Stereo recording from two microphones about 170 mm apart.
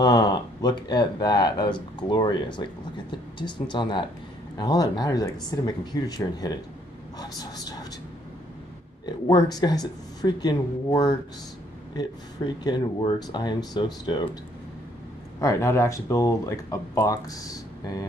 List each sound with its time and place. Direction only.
0.0 s speech: 20° left (ahead or behind)
9.0 s speech: 25° left (ahead or behind)
12.6 s speech: 25° left (ahead or behind)
15.4 s speech: 15° left (ahead or behind)